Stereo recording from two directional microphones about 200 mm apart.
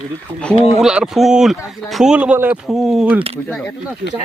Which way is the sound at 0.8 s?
Centre (ahead or behind).